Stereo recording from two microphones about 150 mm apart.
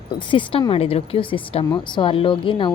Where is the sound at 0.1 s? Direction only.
35° left (ahead or behind).